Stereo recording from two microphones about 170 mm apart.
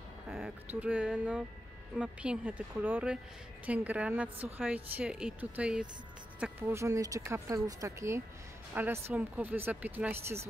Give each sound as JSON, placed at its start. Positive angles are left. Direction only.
{"t": 0.3, "sound": "speech", "side_deg": -5}